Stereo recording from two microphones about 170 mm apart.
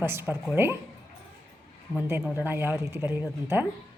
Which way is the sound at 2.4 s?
10° right (ahead or behind).